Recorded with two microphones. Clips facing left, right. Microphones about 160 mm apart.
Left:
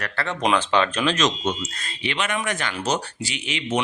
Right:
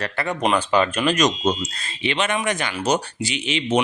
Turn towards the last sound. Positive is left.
turn(degrees=-25)  # may be behind; listen again after turning